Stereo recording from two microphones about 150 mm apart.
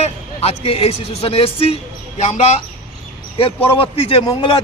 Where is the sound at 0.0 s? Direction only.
40° left (ahead or behind).